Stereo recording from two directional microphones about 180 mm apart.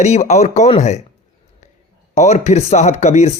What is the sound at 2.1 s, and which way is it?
Speech, 40° left (ahead or behind).